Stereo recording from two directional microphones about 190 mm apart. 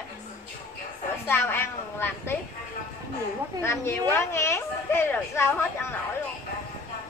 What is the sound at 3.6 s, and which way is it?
A woman's voice, 15° left (ahead or behind).